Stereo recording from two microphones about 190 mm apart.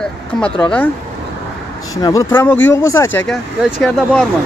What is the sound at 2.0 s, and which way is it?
Speech, 15° left (ahead or behind).